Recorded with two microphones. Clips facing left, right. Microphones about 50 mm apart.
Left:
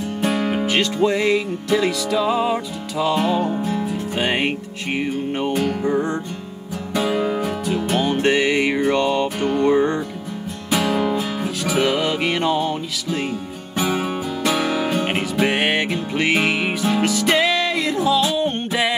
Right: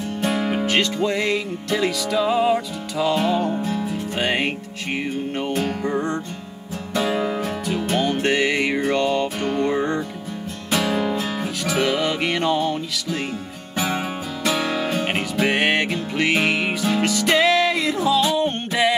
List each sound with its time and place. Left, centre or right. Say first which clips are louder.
0.2 s music: left 1 dB; centre
0.7 s music: left 4 dB; centre
10.7 s music: left 2 dB; centre
11.6 s music: left 2 dB; centre
14.4 s music: left 1 dB; centre